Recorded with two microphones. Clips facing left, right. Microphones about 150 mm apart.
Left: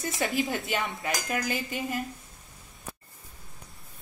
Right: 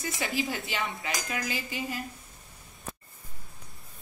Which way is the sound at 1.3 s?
50° left (ahead or behind).